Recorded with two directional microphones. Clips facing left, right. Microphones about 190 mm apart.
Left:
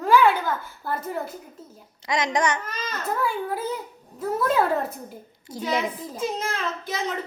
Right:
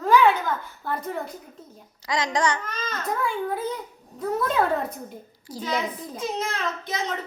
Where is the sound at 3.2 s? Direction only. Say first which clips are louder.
Even; 5° left (ahead or behind).